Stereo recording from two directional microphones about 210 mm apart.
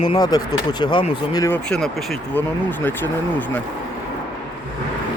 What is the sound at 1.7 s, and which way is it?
Speech, centre (ahead or behind).